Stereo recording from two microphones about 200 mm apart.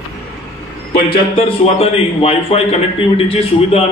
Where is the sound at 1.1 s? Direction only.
25° left (ahead or behind).